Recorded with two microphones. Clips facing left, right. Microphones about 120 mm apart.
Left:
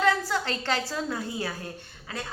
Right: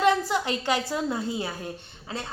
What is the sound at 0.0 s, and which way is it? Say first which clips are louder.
A woman's voice: right 3 dB; 20° right (ahead or behind).